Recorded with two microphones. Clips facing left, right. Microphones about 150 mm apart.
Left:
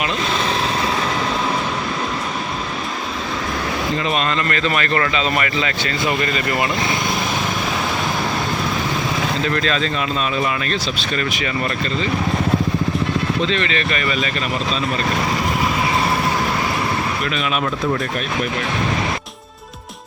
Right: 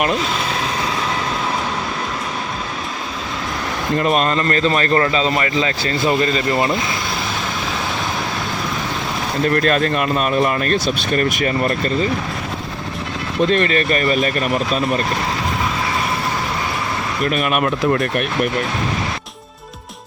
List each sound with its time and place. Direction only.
3.9 s speech: 45° right (ahead or behind); by 6.7 s 30° right (ahead or behind)
9.4 s speech: 50° right (ahead or behind)
13.5 s speech: 45° right (ahead or behind)
17.2 s speech: 50° right (ahead or behind)